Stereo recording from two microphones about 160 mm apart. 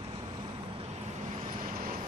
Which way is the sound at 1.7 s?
60° right (ahead or behind).